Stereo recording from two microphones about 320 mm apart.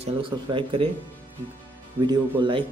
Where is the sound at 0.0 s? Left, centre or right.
Centre.